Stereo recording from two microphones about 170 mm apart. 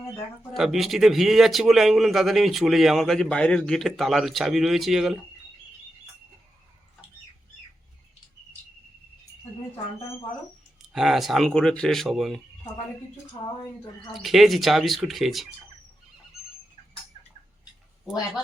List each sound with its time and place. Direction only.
0.5 s a man's voice: centre (ahead or behind)
10.9 s a man's voice: centre (ahead or behind)
13.4 s a woman's voice: 30° left (ahead or behind)
14.1 s a man's voice: centre (ahead or behind)